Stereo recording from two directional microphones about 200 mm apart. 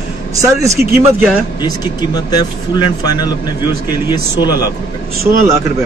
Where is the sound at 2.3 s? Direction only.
20° left (ahead or behind).